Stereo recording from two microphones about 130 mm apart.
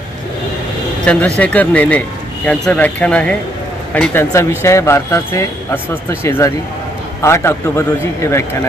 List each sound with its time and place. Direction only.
1.4 s speech: 10° left (ahead or behind)